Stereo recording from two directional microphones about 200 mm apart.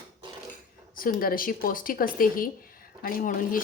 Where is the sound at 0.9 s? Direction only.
45° left (ahead or behind).